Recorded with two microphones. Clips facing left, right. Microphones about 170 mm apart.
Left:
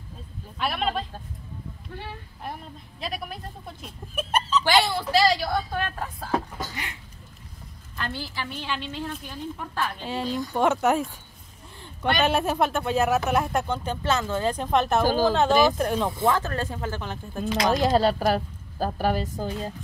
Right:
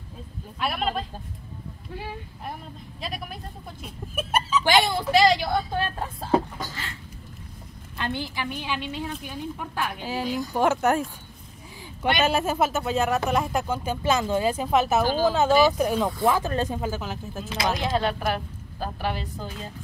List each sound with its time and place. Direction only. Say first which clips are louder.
0.6 s speech: even; centre (ahead or behind)
3.0 s speech: left 2 dB; centre (ahead or behind); by 6.4 s 25° right (ahead or behind)
6.7 s a sound: left 1 dB; 15° left (ahead or behind)
8.0 s speech: right 3 dB; 20° right (ahead or behind); by 11.1 s centre (ahead or behind)
12.2 s speech: left 1 dB; centre (ahead or behind)
16.3 s speech: right 1 dB; 15° right (ahead or behind)
17.7 s a woman's voice: left 5 dB; 40° left (ahead or behind)